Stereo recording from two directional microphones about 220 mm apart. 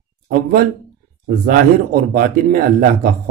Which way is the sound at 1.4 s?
40° right (ahead or behind).